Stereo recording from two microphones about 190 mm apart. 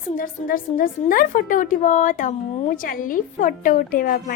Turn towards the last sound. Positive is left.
turn(degrees=50)  # may be behind; listen again after turning